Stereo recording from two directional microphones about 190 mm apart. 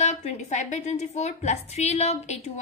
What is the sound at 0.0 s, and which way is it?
A woman's voice, 40° left (ahead or behind).